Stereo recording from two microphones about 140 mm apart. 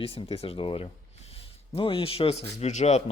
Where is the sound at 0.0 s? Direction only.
45° left (ahead or behind).